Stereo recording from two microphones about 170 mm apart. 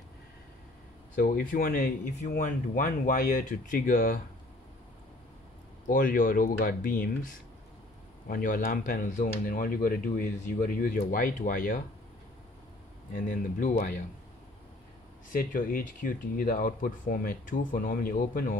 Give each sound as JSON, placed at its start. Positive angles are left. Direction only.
{"t": 1.1, "sound": "speech", "side_deg": 55}
{"t": 5.9, "sound": "speech", "side_deg": 55}
{"t": 13.3, "sound": "speech", "side_deg": 50}
{"t": 15.3, "sound": "speech", "side_deg": 55}